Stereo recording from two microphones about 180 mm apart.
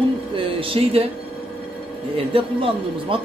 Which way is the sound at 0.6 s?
30° right (ahead or behind).